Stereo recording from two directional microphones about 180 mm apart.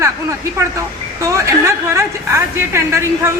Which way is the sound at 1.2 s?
15° right (ahead or behind).